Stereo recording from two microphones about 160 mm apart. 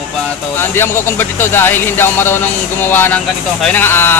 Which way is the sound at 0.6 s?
15° left (ahead or behind).